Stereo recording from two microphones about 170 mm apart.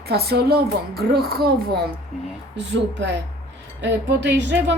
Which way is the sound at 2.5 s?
90° right.